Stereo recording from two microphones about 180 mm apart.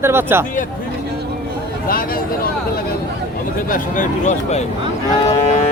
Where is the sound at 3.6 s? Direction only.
50° left (ahead or behind).